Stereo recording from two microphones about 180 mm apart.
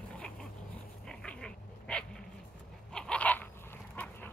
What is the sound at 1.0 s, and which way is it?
Dog, 5° left (ahead or behind).